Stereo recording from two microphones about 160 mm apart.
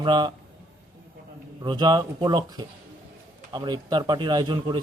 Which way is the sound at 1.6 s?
25° right (ahead or behind).